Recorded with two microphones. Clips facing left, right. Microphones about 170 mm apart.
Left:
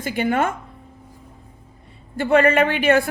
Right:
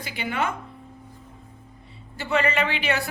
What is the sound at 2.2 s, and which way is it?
Speech, 50° left (ahead or behind).